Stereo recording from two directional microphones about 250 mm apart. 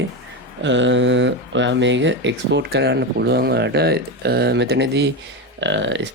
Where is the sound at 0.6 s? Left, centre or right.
Right.